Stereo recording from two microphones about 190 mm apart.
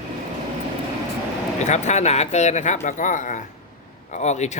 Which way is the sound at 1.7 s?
40° left (ahead or behind).